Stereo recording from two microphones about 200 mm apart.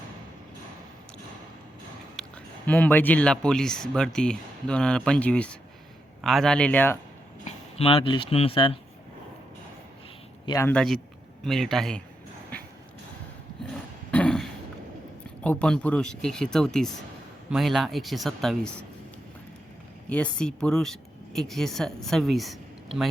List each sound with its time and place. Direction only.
2.2 s a sound: centre (ahead or behind)
2.6 s speech: 10° left (ahead or behind)
7.4 s speech: 30° left (ahead or behind)
10.4 s speech: 15° left (ahead or behind)
14.1 s a sound: 5° left (ahead or behind)
15.4 s speech: 5° left (ahead or behind)
20.1 s speech: 5° left (ahead or behind)